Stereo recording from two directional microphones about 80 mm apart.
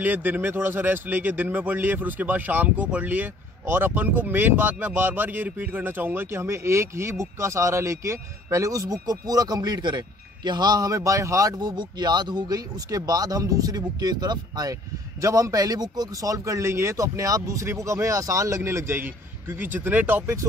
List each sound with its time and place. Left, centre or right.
0.0 s a man's voice: right
11.6 s speech: right
15.2 s a man's voice: right